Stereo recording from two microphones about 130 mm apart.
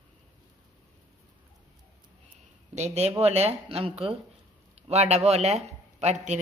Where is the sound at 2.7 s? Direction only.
60° right (ahead or behind).